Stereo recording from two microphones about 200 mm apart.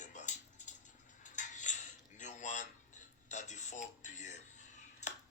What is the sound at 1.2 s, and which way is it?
Dishes, 40° left (ahead or behind).